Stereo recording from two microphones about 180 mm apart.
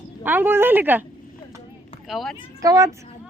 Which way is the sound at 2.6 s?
20° right (ahead or behind).